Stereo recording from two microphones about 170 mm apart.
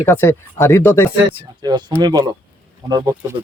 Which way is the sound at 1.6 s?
25° right (ahead or behind).